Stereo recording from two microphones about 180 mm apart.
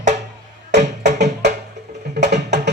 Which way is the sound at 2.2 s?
65° right (ahead or behind).